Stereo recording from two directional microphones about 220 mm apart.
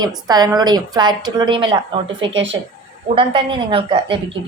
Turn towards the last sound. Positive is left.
turn(degrees=-25)  # may be behind; listen again after turning